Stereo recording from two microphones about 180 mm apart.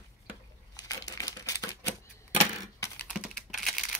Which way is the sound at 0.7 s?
20° left (ahead or behind).